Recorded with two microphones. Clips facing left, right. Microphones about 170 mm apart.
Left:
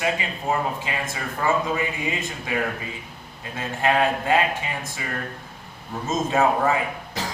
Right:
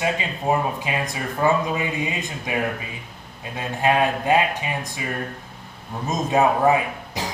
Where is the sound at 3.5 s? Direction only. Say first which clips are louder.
Right 1 dB; 15° right (ahead or behind).